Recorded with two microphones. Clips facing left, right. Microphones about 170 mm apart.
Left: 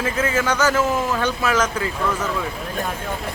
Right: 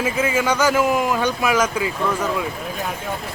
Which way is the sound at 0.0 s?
10° right (ahead or behind).